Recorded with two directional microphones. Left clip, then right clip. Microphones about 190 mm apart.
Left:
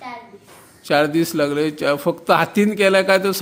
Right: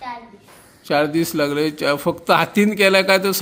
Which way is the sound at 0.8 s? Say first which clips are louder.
Left 1 dB; 5° left (ahead or behind).